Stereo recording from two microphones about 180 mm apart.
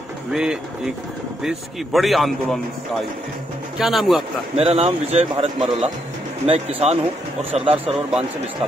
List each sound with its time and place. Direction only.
0.3 s a man's voice: 5° right (ahead or behind)
3.7 s a man's voice: centre (ahead or behind)
4.6 s speech: 35° right (ahead or behind)